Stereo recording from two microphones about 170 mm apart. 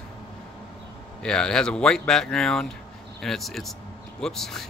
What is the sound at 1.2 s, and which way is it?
Speech, 5° left (ahead or behind).